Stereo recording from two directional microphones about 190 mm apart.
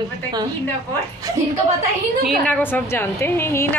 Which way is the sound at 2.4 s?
10° left (ahead or behind).